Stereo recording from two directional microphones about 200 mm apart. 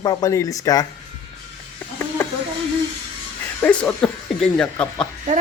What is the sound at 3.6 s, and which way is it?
Speech, 10° left (ahead or behind).